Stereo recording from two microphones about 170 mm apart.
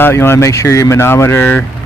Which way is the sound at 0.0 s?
15° left (ahead or behind).